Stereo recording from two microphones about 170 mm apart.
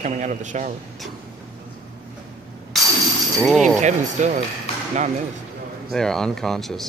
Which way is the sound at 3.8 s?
45° right (ahead or behind).